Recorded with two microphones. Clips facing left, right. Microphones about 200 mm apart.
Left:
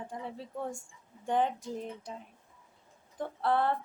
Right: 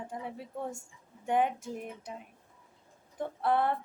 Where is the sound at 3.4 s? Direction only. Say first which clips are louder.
Even; 20° right (ahead or behind).